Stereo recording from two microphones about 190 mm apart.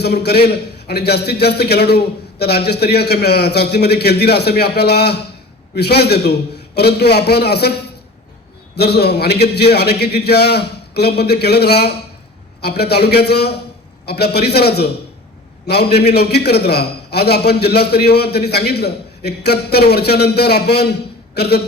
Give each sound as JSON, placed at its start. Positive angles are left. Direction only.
{"t": 0.0, "sound": "a man's voice", "side_deg": 60}
{"t": 8.7, "sound": "a man's voice", "side_deg": 60}